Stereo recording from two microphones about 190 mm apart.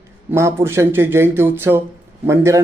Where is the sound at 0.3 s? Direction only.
15° right (ahead or behind).